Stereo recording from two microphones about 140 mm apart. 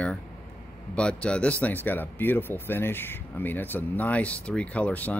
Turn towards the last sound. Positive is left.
turn(degrees=10)  # may be behind; listen again after turning